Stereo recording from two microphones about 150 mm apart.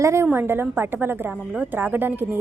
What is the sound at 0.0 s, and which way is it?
A woman's voice, 20° right (ahead or behind).